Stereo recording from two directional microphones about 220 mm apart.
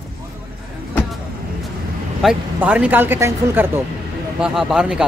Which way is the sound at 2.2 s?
5° right (ahead or behind).